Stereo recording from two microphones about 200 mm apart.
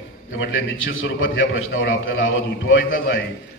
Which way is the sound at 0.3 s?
80° left.